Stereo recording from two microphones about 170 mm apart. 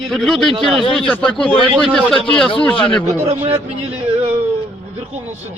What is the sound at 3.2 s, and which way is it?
A man's voice, 40° right (ahead or behind).